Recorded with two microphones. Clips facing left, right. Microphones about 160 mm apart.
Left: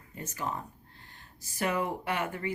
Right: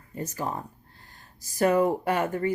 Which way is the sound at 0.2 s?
35° right (ahead or behind).